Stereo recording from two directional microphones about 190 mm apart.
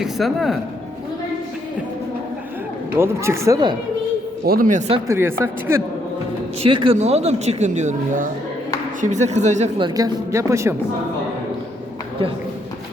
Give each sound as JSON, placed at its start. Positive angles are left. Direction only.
{"t": 0.0, "sound": "speech", "side_deg": 0}
{"t": 3.0, "sound": "speech", "side_deg": -15}
{"t": 4.4, "sound": "speech", "side_deg": -50}
{"t": 5.0, "sound": "speech", "side_deg": -15}
{"t": 6.6, "sound": "speech", "side_deg": -25}
{"t": 9.8, "sound": "speech", "side_deg": -20}